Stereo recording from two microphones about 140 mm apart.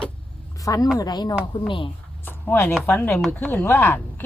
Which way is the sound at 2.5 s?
15° left (ahead or behind).